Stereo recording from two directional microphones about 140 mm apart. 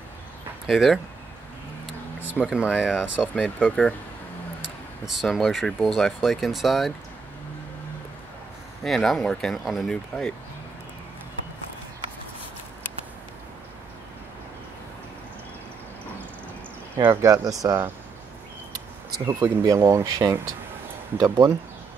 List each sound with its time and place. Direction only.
0.7 s speech: 5° right (ahead or behind)
2.3 s speech: 5° right (ahead or behind)
3.4 s speech: 10° left (ahead or behind)
5.0 s speech: centre (ahead or behind)
8.8 s speech: centre (ahead or behind)
16.9 s speech: 15° right (ahead or behind)
19.2 s speech: 25° right (ahead or behind)